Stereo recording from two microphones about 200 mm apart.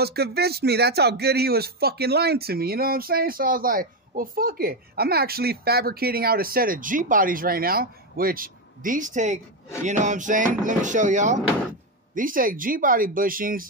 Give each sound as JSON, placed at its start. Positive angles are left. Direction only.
{"t": 0.0, "sound": "speech", "side_deg": -50}